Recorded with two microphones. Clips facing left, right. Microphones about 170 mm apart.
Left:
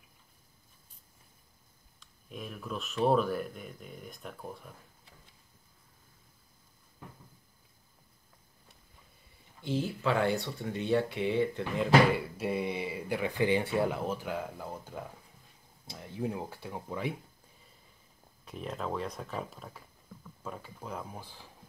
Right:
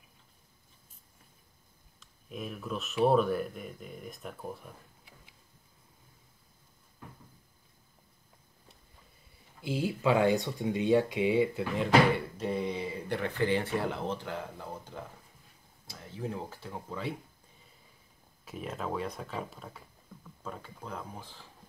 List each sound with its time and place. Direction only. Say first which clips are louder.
2.0 s speech: right 3 dB; centre (ahead or behind)
9.6 s speech: right 1 dB; 10° right (ahead or behind)
11.7 s speech: left 1 dB; centre (ahead or behind)
18.4 s speech: even; 5° right (ahead or behind)